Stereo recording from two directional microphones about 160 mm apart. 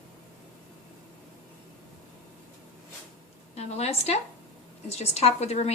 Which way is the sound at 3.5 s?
40° left (ahead or behind).